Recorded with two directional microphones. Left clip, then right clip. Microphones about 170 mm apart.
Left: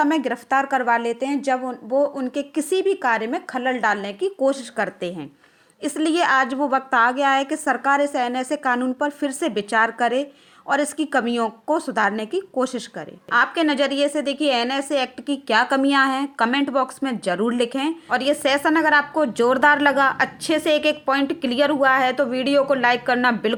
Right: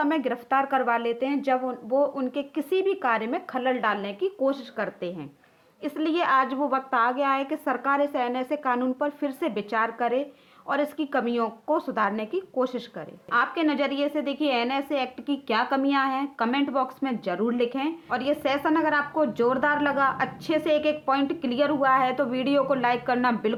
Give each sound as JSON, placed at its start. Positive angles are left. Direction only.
{"t": 0.0, "sound": "a woman's voice", "side_deg": 25}